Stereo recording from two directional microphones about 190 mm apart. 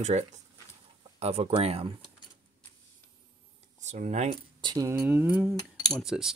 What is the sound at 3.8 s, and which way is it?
Speech, 40° right (ahead or behind).